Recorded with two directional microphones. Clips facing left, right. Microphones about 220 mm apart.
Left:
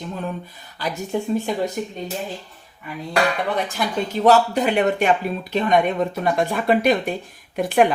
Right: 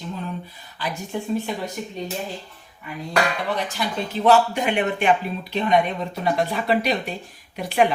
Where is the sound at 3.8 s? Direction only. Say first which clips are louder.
Left 2 dB; 50° left (ahead or behind).